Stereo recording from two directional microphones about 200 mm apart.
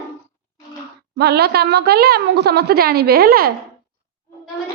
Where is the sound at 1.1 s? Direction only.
55° right (ahead or behind).